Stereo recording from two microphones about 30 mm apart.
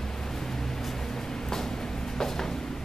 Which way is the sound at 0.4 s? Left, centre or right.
Centre.